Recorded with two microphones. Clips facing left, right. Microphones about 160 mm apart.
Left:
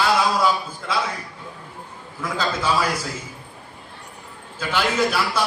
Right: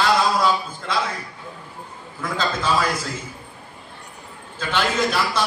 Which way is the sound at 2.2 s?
10° left (ahead or behind).